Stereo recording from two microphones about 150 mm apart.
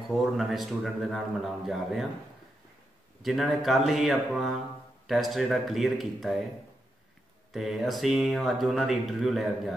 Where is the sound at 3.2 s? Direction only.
Centre (ahead or behind).